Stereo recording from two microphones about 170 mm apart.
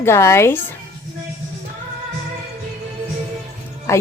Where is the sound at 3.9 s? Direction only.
15° left (ahead or behind).